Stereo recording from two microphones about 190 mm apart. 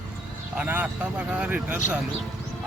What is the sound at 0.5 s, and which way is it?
A man's voice, 10° right (ahead or behind).